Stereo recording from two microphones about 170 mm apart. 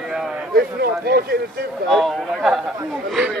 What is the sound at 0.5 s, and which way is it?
Speech, 65° right (ahead or behind).